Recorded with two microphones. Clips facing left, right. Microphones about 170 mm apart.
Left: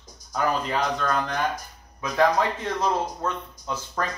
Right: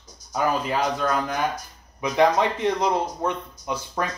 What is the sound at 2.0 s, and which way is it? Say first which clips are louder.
Speech: right 2 dB; 20° right (ahead or behind).